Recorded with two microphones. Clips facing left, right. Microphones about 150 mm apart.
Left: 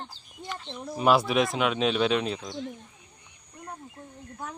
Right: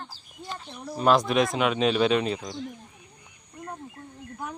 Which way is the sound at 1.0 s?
10° left (ahead or behind).